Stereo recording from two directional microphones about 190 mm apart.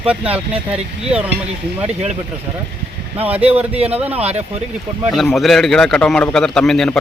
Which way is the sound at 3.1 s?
10° right (ahead or behind).